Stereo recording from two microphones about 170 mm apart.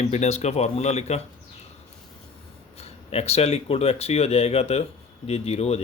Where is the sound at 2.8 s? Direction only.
40° left (ahead or behind).